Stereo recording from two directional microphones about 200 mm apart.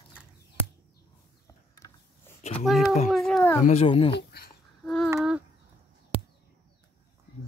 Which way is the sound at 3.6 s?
30° left (ahead or behind).